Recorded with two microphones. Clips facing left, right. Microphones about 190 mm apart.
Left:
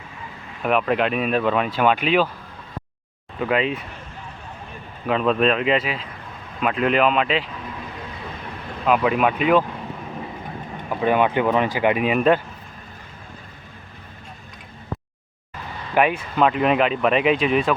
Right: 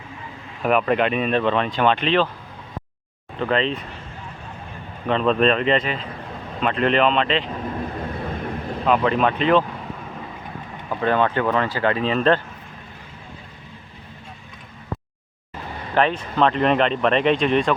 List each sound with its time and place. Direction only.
0.6 s speech: centre (ahead or behind)
3.3 s speech: 10° left (ahead or behind)
5.0 s speech: 5° left (ahead or behind)
8.1 s vehicle: 55° right (ahead or behind)
8.8 s speech: 5° left (ahead or behind)
10.8 s speech: 15° left (ahead or behind)
16.0 s speech: 10° left (ahead or behind)